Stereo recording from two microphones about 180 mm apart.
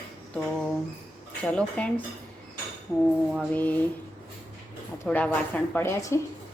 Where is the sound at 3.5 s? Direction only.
10° left (ahead or behind).